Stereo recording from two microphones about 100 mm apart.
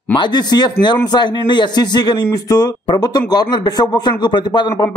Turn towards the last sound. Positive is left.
turn(degrees=50)  # may be behind; listen again after turning